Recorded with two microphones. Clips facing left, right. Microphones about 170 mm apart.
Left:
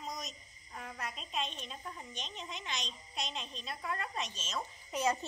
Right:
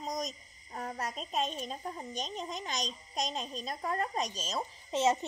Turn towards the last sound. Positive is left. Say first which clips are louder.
# right 5 dB
turn(degrees=-25)  # may be behind; listen again after turning